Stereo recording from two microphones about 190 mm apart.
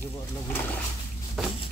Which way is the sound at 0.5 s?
10° left (ahead or behind).